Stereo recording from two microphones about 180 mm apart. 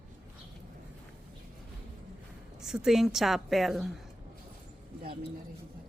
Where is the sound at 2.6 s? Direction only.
5° right (ahead or behind).